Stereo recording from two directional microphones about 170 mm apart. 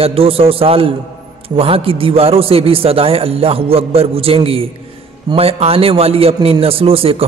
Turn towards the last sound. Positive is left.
turn(degrees=-35)  # may be behind; listen again after turning